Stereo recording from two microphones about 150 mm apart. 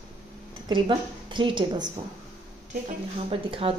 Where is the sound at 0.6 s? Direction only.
35° right (ahead or behind).